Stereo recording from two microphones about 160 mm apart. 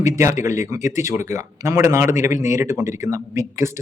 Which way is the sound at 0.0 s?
20° right (ahead or behind).